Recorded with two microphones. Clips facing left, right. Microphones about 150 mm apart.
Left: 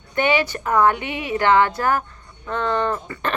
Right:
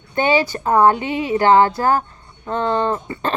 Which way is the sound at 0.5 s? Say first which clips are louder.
Right 4 dB; 30° right (ahead or behind).